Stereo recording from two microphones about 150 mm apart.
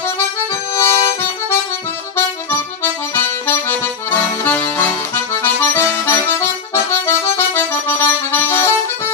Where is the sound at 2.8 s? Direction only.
15° left (ahead or behind).